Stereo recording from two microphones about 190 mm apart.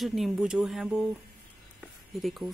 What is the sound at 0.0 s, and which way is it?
Speech, centre (ahead or behind).